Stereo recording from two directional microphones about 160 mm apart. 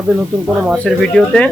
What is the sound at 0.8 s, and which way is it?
Speech, 5° left (ahead or behind).